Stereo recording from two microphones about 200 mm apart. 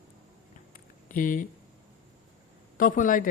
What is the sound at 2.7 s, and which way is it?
Speech, 40° left (ahead or behind).